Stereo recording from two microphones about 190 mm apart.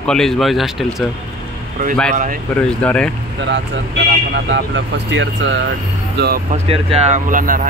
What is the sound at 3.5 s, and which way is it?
Speech, 70° right (ahead or behind).